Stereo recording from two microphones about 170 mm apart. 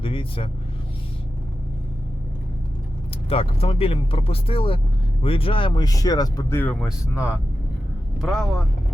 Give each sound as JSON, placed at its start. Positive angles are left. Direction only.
{"t": 0.0, "sound": "speech", "side_deg": 30}
{"t": 3.2, "sound": "speech", "side_deg": 35}
{"t": 6.8, "sound": "speech", "side_deg": -10}